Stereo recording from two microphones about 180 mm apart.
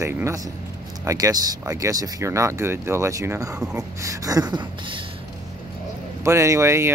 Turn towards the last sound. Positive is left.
turn(degrees=-15)  # may be behind; listen again after turning